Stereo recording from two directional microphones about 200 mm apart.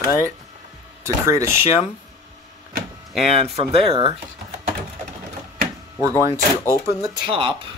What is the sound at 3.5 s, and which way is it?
Speech, 30° right (ahead or behind).